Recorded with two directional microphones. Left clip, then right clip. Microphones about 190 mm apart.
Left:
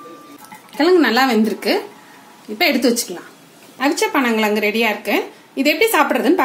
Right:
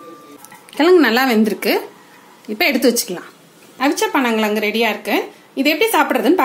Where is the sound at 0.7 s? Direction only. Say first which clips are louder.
Right 2 dB; 30° right (ahead or behind).